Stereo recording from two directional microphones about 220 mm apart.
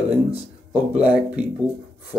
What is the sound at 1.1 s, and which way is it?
Speech, 5° right (ahead or behind).